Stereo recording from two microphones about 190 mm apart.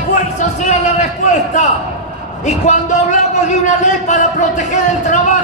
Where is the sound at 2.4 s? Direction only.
40° left (ahead or behind).